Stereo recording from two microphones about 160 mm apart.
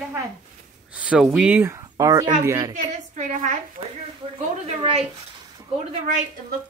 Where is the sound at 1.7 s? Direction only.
20° right (ahead or behind).